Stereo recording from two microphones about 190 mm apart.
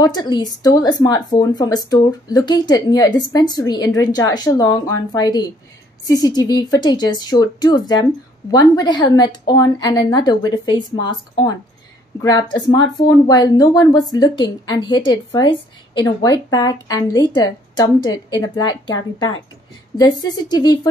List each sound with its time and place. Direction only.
0.0 s speech: 20° left (ahead or behind)